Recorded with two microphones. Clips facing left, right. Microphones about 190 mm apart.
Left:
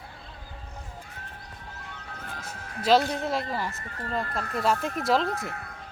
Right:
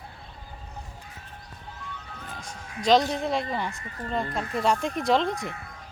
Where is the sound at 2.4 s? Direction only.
5° left (ahead or behind).